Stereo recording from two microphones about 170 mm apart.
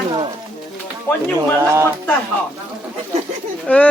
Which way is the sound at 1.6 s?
15° right (ahead or behind).